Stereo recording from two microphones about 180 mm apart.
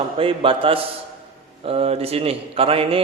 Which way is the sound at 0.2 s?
30° right (ahead or behind).